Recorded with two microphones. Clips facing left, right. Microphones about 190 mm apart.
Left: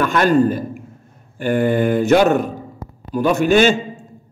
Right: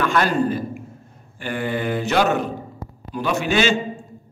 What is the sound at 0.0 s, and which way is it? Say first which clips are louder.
A man's voice: left 5 dB; 45° left (ahead or behind).